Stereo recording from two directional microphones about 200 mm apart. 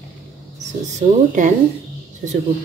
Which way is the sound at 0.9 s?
40° right (ahead or behind).